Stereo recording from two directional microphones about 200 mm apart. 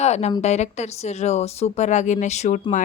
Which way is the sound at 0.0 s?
35° left (ahead or behind).